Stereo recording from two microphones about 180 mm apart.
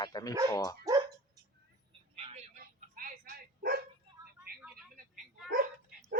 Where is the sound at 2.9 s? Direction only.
50° right (ahead or behind).